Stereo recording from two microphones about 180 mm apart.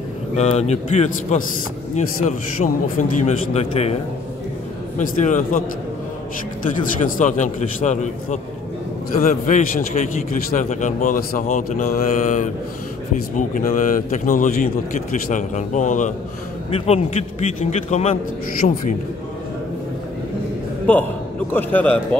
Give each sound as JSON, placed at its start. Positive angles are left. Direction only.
{"t": 0.4, "sound": "a man's voice", "side_deg": 40}
{"t": 7.1, "sound": "a man's voice", "side_deg": 45}
{"t": 20.9, "sound": "a man's voice", "side_deg": 10}